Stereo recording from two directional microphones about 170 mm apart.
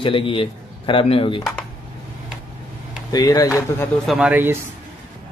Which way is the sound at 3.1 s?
20° left (ahead or behind).